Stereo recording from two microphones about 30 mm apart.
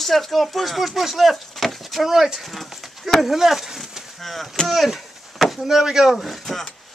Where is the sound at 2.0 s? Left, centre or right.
Centre.